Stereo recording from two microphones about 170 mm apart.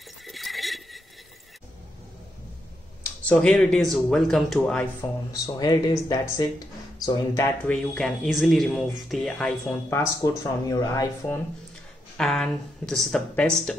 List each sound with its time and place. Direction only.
0.2 s a sound: centre (ahead or behind)
3.3 s speech: 5° left (ahead or behind)
5.3 s speech: 25° left (ahead or behind); by 9.8 s 5° left (ahead or behind)
9.8 s speech: 15° left (ahead or behind)
12.2 s speech: 5° left (ahead or behind)